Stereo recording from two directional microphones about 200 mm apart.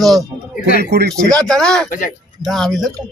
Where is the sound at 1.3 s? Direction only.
5° left (ahead or behind).